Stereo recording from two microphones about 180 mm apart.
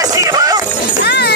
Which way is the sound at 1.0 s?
65° left (ahead or behind).